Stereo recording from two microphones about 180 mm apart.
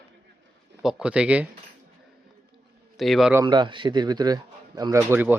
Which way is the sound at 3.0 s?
Centre (ahead or behind).